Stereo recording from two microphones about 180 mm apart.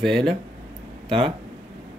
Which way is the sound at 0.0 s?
5° left (ahead or behind).